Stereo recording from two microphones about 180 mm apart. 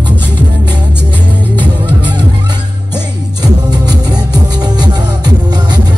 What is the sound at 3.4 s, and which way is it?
Music, 20° right (ahead or behind).